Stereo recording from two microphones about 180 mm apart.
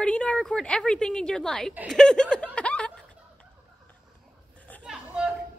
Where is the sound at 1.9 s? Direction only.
5° left (ahead or behind).